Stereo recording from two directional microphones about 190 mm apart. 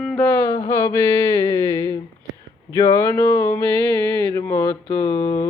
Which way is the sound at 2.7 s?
15° left (ahead or behind).